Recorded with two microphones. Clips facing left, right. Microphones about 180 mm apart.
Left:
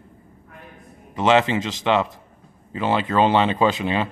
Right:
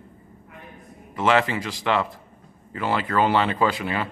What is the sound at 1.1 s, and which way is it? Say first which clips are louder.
Speech: left 3 dB; 20° left (ahead or behind).